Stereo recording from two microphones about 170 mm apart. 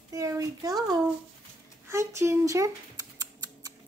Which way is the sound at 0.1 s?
20° right (ahead or behind).